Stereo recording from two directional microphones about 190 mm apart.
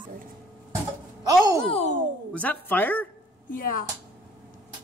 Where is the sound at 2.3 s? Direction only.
10° left (ahead or behind).